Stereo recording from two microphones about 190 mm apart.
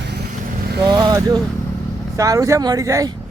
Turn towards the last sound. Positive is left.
turn(degrees=-15)  # may be behind; listen again after turning